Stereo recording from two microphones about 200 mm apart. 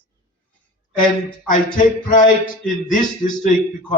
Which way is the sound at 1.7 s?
40° left (ahead or behind).